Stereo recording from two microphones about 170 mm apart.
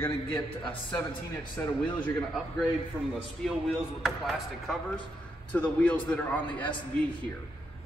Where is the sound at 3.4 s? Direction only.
Centre (ahead or behind).